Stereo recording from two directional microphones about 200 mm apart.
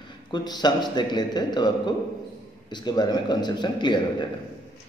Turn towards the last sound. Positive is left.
turn(degrees=20)  # may be behind; listen again after turning